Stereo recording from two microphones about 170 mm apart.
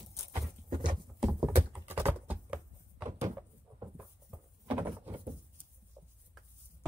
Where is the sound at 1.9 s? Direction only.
10° right (ahead or behind).